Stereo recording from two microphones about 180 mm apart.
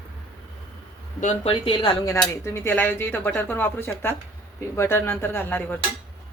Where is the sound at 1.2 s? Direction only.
35° left (ahead or behind).